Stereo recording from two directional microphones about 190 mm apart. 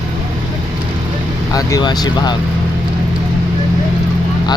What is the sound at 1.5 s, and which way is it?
Speech, 20° left (ahead or behind).